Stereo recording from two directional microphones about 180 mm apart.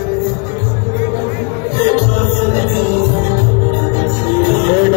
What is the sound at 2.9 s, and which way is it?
Music, 45° left (ahead or behind).